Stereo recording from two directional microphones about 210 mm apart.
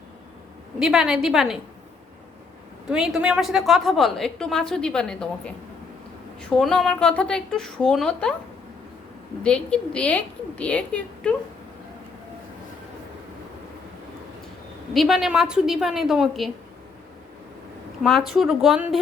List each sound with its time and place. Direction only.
0.8 s a woman's voice: 5° right (ahead or behind)
2.9 s a woman's voice: 5° right (ahead or behind)
9.4 s a woman's voice: 5° left (ahead or behind)
14.9 s a woman's voice: centre (ahead or behind)
18.0 s a woman's voice: centre (ahead or behind)